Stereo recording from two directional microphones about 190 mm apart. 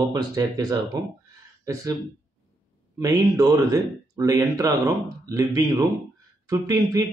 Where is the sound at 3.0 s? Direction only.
20° right (ahead or behind).